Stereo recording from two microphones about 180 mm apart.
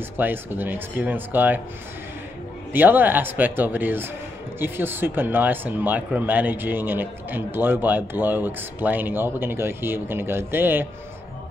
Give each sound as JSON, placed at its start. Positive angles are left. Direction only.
{"t": 0.2, "sound": "speech", "side_deg": -10}
{"t": 2.7, "sound": "speech", "side_deg": -10}